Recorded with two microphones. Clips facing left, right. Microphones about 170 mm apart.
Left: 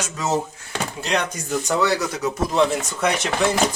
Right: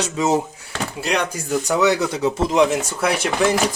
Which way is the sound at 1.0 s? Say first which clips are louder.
Right 2 dB; 10° right (ahead or behind).